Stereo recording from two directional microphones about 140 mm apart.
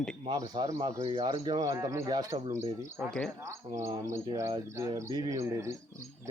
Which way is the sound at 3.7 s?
25° right (ahead or behind).